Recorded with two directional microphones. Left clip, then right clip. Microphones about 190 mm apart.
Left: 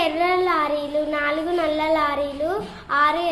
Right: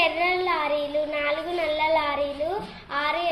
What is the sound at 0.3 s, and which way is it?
Child singing, 20° left (ahead or behind).